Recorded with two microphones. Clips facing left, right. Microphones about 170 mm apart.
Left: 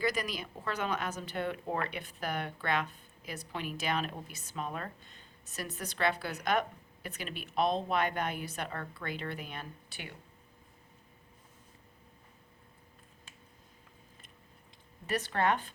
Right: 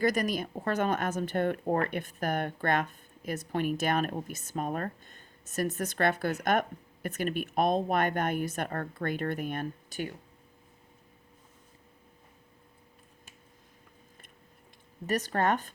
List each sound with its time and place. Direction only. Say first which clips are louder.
0.0 s speech: right 6 dB; 45° right (ahead or behind)
15.0 s speech: right 3 dB; 45° right (ahead or behind)